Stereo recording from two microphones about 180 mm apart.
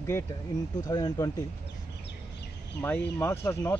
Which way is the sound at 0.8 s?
20° left (ahead or behind).